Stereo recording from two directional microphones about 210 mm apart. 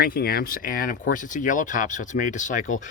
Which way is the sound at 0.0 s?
45° left (ahead or behind).